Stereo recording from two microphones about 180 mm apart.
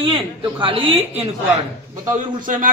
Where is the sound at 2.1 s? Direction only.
45° right (ahead or behind).